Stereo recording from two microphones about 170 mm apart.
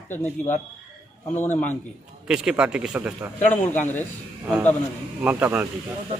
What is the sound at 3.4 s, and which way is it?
Speech, 10° left (ahead or behind).